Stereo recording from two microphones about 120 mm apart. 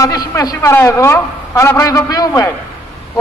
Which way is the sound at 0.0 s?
30° left (ahead or behind).